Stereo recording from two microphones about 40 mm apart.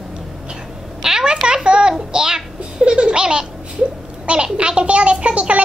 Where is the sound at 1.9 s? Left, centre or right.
Centre.